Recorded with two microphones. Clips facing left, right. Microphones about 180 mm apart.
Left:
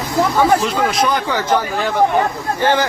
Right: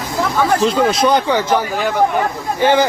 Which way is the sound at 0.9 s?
25° right (ahead or behind).